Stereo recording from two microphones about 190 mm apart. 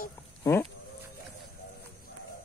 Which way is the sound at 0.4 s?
15° left (ahead or behind).